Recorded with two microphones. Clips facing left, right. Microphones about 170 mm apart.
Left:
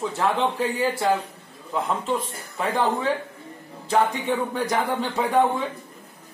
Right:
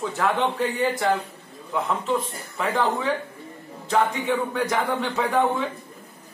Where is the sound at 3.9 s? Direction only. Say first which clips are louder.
Even; 10° left (ahead or behind).